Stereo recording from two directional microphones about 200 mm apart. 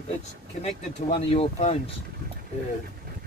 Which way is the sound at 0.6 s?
30° left (ahead or behind).